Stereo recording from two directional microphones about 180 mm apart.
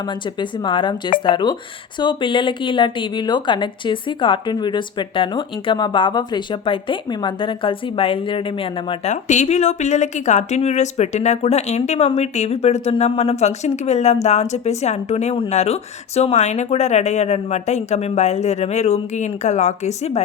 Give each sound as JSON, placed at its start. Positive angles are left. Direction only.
{"t": 0.3, "sound": "a woman's voice", "side_deg": 25}